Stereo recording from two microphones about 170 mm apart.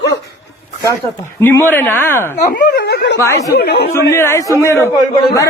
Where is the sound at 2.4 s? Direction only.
50° left (ahead or behind).